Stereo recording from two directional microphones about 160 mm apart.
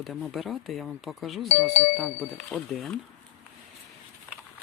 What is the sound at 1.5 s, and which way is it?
Speech, 45° left (ahead or behind).